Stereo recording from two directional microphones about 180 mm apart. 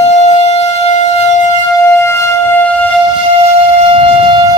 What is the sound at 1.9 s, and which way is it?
Music, 15° left (ahead or behind).